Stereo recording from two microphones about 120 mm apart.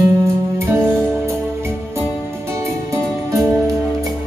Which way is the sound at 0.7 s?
20° right (ahead or behind).